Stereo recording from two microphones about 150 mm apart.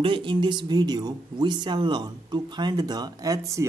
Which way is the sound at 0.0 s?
35° right (ahead or behind).